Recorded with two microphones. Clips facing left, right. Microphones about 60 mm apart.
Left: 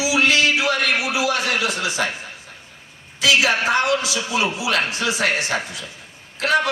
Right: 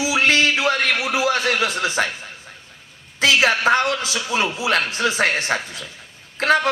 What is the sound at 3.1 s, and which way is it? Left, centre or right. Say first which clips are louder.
Speech: right 1 dB; right.